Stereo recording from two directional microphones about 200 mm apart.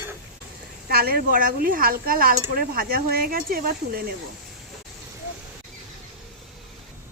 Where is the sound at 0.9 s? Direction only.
50° right (ahead or behind).